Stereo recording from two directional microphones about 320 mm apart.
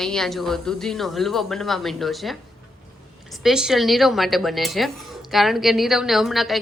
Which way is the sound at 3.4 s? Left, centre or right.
Centre.